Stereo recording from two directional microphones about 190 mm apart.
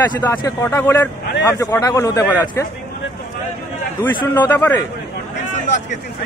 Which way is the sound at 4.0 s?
10° left (ahead or behind).